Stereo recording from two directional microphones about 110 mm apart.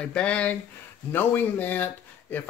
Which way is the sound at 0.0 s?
10° left (ahead or behind).